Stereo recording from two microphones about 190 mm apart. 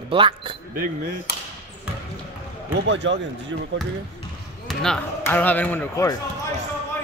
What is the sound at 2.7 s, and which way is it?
Speech, 70° right (ahead or behind).